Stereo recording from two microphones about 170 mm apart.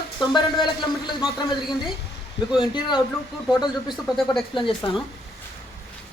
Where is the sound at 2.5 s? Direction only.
30° left (ahead or behind).